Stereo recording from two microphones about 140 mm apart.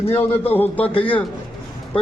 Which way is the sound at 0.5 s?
15° left (ahead or behind).